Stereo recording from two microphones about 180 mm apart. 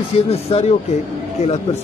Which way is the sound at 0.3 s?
35° left (ahead or behind).